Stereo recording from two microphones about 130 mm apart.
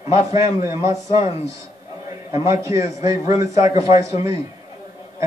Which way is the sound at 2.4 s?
20° right (ahead or behind).